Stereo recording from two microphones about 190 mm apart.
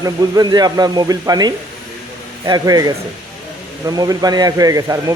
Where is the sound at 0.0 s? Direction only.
20° right (ahead or behind).